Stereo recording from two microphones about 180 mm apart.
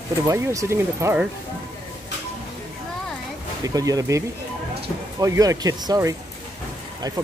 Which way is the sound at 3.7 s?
20° right (ahead or behind).